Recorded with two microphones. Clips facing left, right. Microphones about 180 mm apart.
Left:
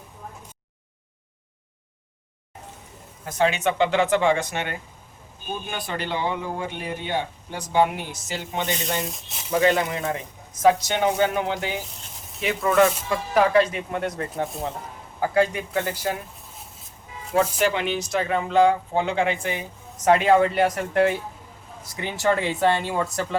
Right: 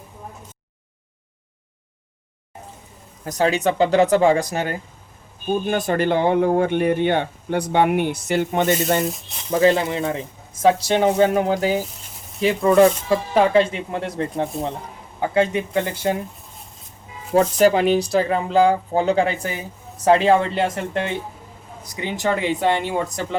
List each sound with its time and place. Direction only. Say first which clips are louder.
3.2 s speech: right 3 dB; 35° right (ahead or behind)
9.6 s speech: right 4 dB; 30° right (ahead or behind)
14.5 s a man's voice: right 4 dB; centre (ahead or behind)
15.2 s speech: right 2 dB; 25° right (ahead or behind)
17.3 s speech: right 6 dB; 35° right (ahead or behind); by 23.4 s 20° right (ahead or behind)